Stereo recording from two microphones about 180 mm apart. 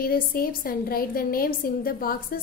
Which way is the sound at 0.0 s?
55° left (ahead or behind).